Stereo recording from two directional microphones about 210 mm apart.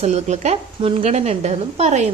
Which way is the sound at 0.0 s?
30° right (ahead or behind).